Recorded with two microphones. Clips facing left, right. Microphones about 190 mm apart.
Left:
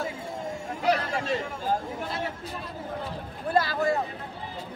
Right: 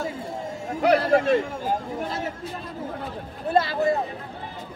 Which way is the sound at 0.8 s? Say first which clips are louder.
Right 8 dB; 55° right (ahead or behind).